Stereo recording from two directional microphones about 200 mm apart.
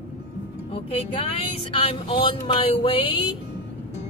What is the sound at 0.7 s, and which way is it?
Speech, 30° left (ahead or behind).